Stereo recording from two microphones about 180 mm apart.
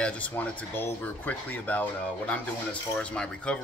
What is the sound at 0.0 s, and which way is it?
Speech, 10° left (ahead or behind).